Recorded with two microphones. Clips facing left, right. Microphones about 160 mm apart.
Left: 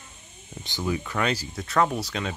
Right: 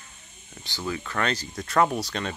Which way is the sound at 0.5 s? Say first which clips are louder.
Left 3 dB; 15° left (ahead or behind).